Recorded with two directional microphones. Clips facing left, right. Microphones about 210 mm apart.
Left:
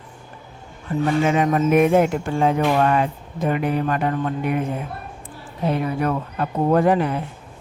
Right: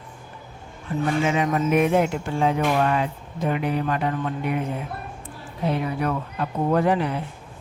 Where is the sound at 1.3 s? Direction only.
45° left (ahead or behind).